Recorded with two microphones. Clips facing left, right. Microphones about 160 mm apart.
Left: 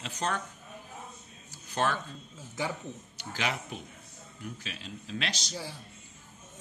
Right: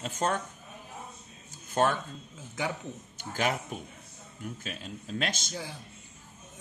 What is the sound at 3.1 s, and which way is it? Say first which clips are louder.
Speech: right 4 dB; 45° right (ahead or behind).